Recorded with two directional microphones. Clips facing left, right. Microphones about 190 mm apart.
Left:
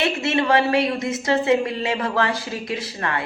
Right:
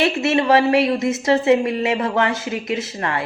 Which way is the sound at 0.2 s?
25° right (ahead or behind).